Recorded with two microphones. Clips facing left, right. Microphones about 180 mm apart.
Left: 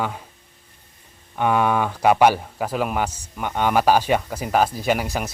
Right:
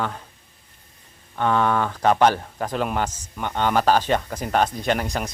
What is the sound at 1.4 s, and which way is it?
Speech, 10° left (ahead or behind).